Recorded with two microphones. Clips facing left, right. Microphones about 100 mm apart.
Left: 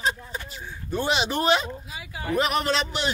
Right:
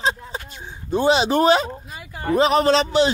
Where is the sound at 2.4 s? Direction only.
30° right (ahead or behind).